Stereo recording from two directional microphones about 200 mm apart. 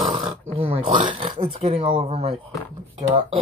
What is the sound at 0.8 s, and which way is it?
Speech, 40° right (ahead or behind).